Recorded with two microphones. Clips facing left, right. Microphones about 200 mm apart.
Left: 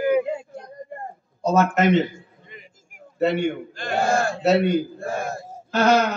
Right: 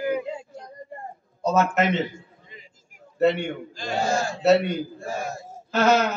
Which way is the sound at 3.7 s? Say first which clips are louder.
Left 2 dB; 55° left (ahead or behind).